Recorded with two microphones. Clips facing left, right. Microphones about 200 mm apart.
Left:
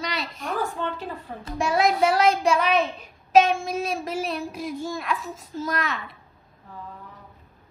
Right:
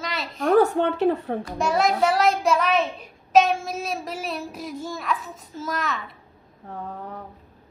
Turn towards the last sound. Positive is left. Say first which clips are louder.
# right 7 dB
turn(degrees=-65)  # may be behind; listen again after turning